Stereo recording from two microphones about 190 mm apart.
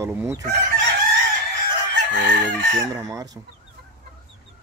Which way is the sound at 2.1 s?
70° right (ahead or behind).